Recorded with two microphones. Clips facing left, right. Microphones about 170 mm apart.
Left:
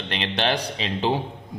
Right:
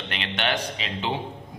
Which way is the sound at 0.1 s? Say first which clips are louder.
Left 3 dB; 35° left (ahead or behind).